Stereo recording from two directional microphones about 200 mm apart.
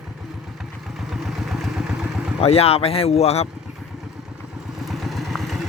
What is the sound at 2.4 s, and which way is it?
Speech, 30° left (ahead or behind).